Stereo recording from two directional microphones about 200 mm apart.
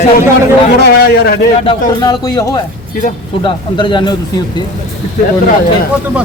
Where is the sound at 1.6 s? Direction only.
25° left (ahead or behind).